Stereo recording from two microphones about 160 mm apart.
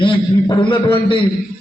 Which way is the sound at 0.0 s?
30° left (ahead or behind).